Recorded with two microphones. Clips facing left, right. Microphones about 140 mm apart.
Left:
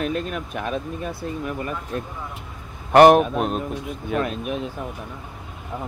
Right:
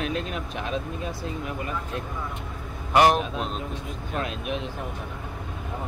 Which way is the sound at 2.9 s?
55° left (ahead or behind).